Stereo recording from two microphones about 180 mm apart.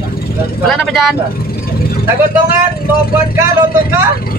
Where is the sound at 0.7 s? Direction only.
Centre (ahead or behind).